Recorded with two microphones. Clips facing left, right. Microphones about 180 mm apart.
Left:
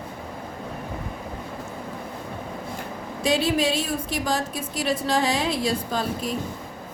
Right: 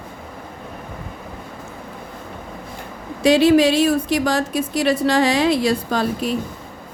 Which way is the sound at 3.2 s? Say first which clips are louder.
Right 9 dB; 70° right (ahead or behind).